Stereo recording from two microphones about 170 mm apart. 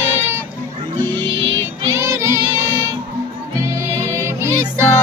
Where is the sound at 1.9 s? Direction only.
15° right (ahead or behind).